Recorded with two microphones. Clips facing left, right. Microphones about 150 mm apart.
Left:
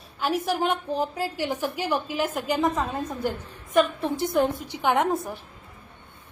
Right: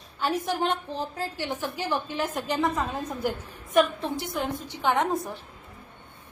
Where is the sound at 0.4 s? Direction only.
10° left (ahead or behind).